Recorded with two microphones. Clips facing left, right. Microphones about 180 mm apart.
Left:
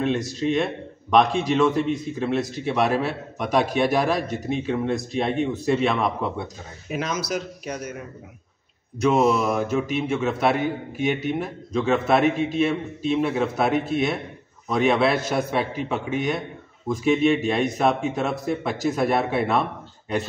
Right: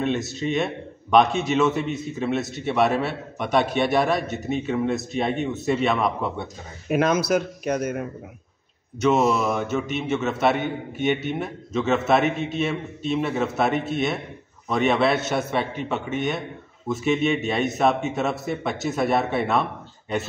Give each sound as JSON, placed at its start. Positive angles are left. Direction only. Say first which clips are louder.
{"t": 0.0, "sound": "a man's voice", "louder": "left 1 dB", "side_deg": 0}
{"t": 6.9, "sound": "speech", "louder": "right 7 dB", "side_deg": -55}
{"t": 9.0, "sound": "a man's voice", "louder": "left 1 dB", "side_deg": 0}